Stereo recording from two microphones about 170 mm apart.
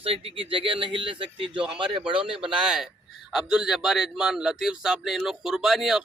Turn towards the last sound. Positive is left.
turn(degrees=0)  # may be behind; listen again after turning